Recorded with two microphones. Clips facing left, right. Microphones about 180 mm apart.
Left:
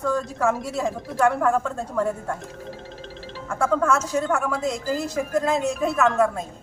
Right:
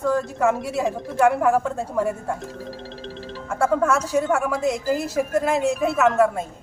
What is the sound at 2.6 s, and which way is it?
Music, 35° right (ahead or behind).